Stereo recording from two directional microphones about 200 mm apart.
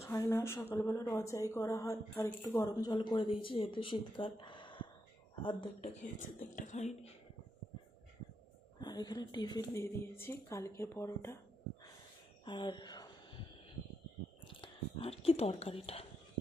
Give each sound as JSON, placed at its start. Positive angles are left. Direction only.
{"t": 0.0, "sound": "speech", "side_deg": 15}
{"t": 6.0, "sound": "speech", "side_deg": 40}
{"t": 8.8, "sound": "speech", "side_deg": 20}
{"t": 12.5, "sound": "a sound", "side_deg": 25}
{"t": 14.4, "sound": "speech", "side_deg": 25}